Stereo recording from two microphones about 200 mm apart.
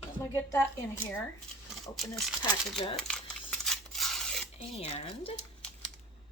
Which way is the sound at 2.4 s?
25° left (ahead or behind).